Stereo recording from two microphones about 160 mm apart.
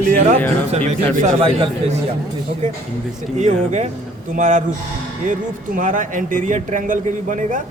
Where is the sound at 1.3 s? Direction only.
35° right (ahead or behind).